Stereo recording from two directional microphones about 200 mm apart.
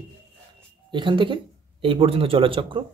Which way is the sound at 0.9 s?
25° right (ahead or behind).